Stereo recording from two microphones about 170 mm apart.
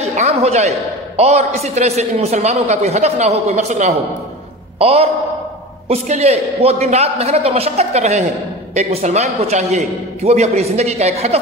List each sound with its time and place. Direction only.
0.1 s a man's voice: 40° right (ahead or behind)